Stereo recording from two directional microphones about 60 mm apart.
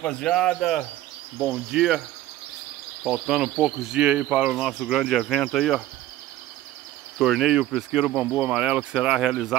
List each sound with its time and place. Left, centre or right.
0.0 s speech: centre
1.4 s speech: centre
3.0 s speech: centre
4.6 s speech: centre
7.2 s speech: centre